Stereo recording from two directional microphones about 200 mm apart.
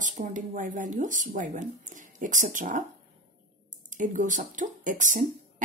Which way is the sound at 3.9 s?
40° right (ahead or behind).